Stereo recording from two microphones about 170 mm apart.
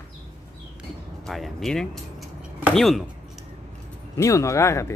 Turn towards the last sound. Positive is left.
turn(degrees=15)  # may be behind; listen again after turning